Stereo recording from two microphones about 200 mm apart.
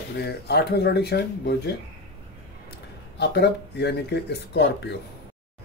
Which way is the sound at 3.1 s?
55° left (ahead or behind).